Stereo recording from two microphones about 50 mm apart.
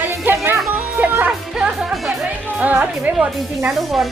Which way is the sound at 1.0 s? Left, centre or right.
Right.